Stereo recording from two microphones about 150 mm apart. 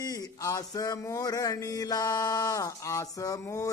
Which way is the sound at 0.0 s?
25° left (ahead or behind).